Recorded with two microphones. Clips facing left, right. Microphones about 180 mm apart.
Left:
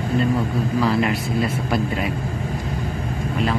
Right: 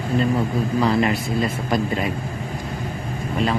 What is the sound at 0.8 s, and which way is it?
A man's voice, 5° left (ahead or behind).